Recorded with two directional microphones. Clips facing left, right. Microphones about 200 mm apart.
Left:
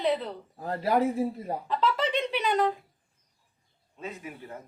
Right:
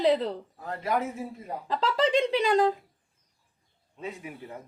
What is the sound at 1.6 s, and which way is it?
Speech, 30° right (ahead or behind).